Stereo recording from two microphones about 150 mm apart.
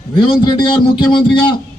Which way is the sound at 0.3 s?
30° left (ahead or behind).